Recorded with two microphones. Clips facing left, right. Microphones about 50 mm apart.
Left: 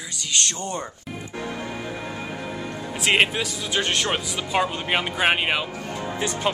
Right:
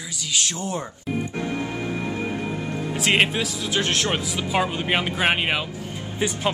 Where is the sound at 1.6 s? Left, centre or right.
Right.